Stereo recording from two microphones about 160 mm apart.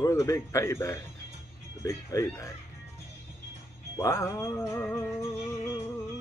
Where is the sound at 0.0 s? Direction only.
20° left (ahead or behind).